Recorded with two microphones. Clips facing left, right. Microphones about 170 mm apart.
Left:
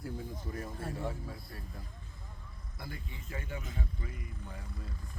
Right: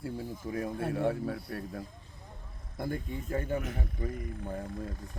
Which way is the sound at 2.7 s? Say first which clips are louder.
Right 12 dB; 50° right (ahead or behind).